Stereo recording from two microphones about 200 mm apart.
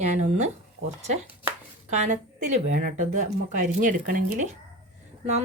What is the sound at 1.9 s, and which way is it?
Speech, 35° right (ahead or behind).